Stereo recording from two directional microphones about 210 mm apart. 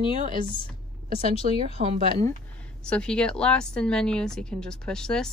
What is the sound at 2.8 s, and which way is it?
A woman's voice, 5° left (ahead or behind).